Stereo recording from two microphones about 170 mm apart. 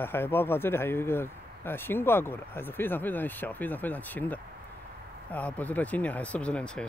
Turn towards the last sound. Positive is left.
turn(degrees=5)  # may be behind; listen again after turning